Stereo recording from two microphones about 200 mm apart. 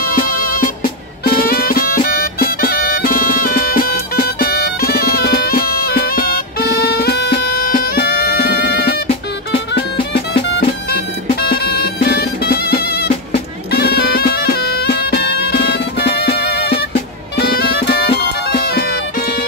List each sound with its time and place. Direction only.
0.1 s music: 45° left (ahead or behind)